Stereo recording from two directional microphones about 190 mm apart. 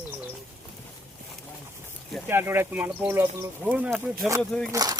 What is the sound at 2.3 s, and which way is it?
Speech, 10° right (ahead or behind).